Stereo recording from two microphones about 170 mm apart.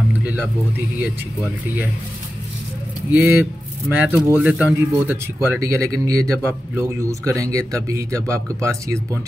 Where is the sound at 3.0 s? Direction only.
15° right (ahead or behind).